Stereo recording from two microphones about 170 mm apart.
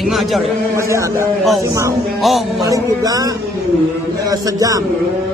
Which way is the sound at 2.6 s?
20° right (ahead or behind).